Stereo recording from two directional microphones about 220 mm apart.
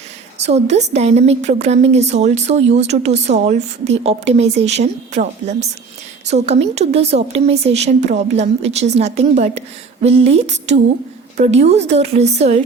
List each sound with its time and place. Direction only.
0.3 s a woman's voice: 30° right (ahead or behind)